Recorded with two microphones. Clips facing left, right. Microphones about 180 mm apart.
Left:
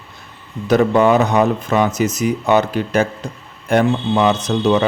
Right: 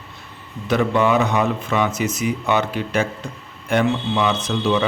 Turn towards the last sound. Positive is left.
turn(degrees=40)  # may be behind; listen again after turning